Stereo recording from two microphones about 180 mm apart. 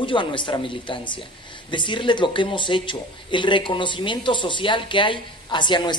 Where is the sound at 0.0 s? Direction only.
25° left (ahead or behind).